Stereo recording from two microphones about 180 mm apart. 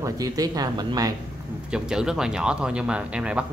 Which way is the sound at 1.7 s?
5° right (ahead or behind).